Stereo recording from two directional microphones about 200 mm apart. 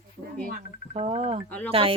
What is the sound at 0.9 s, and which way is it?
Speech, 30° right (ahead or behind).